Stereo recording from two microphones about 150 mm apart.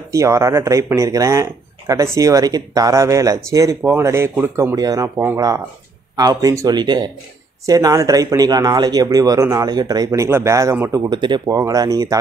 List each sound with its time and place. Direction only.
0.1 s speech: 20° right (ahead or behind)